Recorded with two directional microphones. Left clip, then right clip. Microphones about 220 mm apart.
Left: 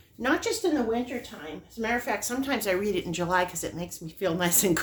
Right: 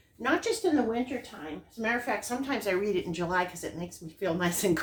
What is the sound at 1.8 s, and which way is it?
A woman's voice, 50° left (ahead or behind).